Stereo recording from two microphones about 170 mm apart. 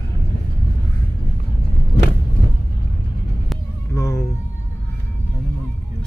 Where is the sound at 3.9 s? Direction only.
15° left (ahead or behind).